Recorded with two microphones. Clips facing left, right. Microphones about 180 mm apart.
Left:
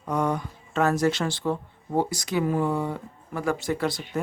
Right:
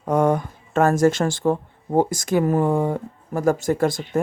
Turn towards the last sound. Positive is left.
turn(degrees=-45)  # may be behind; listen again after turning